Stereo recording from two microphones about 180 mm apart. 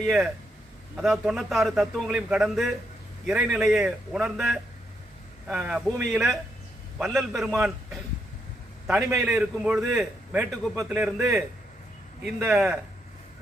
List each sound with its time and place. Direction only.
0.9 s a man's voice: centre (ahead or behind)
9.0 s a man's voice: 15° right (ahead or behind)
9.2 s a man's voice: 5° right (ahead or behind)
12.2 s a man's voice: 5° right (ahead or behind)